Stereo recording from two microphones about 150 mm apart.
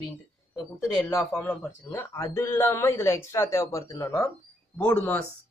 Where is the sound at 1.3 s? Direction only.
15° left (ahead or behind).